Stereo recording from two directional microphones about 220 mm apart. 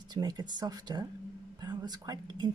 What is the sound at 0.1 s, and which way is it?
Speech, 20° right (ahead or behind).